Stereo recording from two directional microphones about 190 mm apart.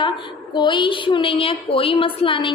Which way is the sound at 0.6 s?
25° left (ahead or behind).